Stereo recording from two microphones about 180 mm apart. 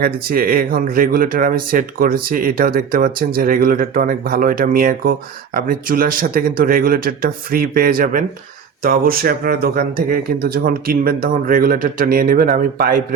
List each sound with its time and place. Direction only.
0.0 s speech: 55° right (ahead or behind)